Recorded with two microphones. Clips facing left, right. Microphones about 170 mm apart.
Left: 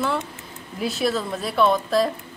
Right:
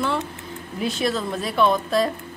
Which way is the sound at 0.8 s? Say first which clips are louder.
Even; centre (ahead or behind).